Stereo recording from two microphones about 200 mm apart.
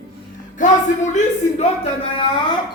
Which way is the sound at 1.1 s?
30° left (ahead or behind).